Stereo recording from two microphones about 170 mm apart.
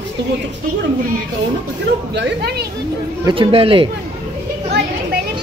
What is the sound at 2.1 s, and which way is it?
Speech, 85° right.